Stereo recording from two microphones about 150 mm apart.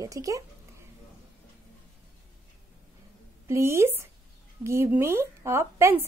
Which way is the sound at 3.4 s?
20° right (ahead or behind).